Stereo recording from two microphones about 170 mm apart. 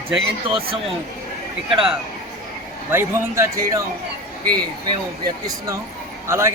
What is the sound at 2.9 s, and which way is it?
Speech, 15° right (ahead or behind).